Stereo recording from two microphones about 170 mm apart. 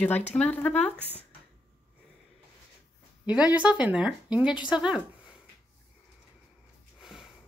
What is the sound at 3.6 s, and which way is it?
Speech, 10° right (ahead or behind).